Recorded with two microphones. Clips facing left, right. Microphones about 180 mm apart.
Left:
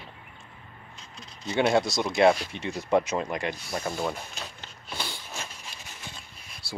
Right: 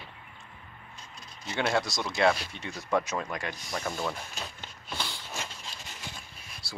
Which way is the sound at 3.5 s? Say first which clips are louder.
Left 3 dB; 10° left (ahead or behind).